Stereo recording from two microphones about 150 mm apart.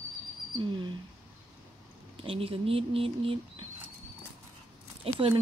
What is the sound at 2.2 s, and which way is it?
Speech, 40° right (ahead or behind).